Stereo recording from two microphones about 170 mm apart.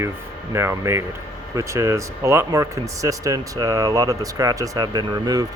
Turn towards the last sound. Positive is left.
turn(degrees=-25)  # may be behind; listen again after turning